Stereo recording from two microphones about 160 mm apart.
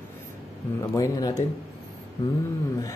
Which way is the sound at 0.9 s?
20° left (ahead or behind).